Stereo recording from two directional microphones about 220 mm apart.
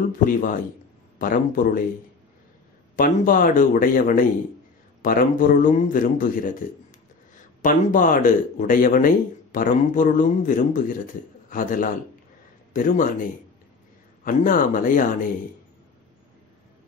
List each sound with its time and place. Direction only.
0.2 s speech: 40° left (ahead or behind)
3.0 s speech: 40° left (ahead or behind)
7.6 s a man's voice: 35° left (ahead or behind)